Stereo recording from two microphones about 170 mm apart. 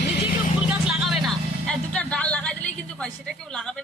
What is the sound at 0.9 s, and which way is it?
Vehicle, centre (ahead or behind).